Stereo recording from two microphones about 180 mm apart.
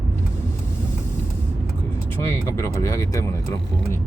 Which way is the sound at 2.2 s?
15° left (ahead or behind).